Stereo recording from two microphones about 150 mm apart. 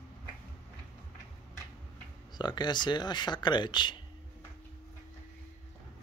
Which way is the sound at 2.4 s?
30° left (ahead or behind).